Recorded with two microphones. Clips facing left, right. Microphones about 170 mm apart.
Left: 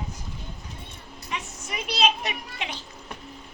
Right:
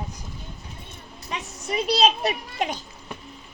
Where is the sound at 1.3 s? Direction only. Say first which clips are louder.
Right 5 dB; 35° right (ahead or behind).